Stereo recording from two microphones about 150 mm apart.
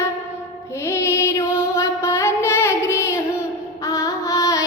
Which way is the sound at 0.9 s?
20° left (ahead or behind).